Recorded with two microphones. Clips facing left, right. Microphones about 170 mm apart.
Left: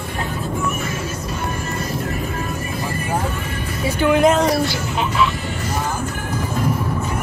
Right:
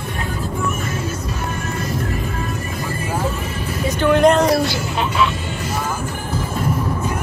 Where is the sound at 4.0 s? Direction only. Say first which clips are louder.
Right 1 dB; 5° left (ahead or behind).